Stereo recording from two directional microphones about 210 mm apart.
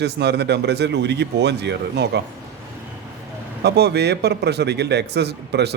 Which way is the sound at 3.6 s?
50° right (ahead or behind).